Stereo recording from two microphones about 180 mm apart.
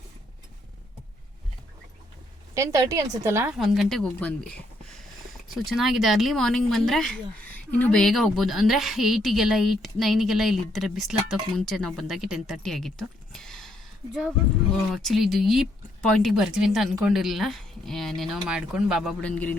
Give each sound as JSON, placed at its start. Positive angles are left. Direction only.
{"t": 2.6, "sound": "a woman's voice", "side_deg": -15}
{"t": 3.5, "sound": "speech", "side_deg": 0}
{"t": 19.2, "sound": "a man's voice", "side_deg": 10}